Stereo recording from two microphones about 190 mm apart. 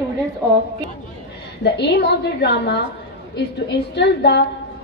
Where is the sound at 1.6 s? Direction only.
60° left (ahead or behind).